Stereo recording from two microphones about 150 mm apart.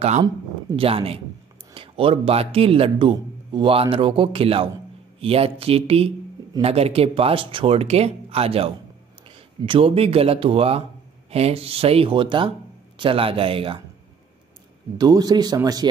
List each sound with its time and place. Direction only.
0.7 s a man's voice: 40° right (ahead or behind)
15.0 s speech: 25° right (ahead or behind)